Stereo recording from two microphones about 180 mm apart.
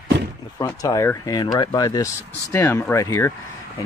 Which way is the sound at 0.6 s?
15° left (ahead or behind).